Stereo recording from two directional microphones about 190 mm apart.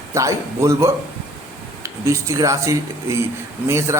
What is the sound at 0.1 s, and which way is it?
A man's voice, 15° right (ahead or behind).